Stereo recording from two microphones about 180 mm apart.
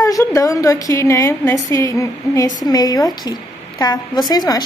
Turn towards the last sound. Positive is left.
turn(degrees=20)  # may be behind; listen again after turning